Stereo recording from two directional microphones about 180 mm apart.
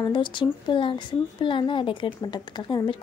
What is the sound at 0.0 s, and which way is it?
A woman's voice, 25° left (ahead or behind).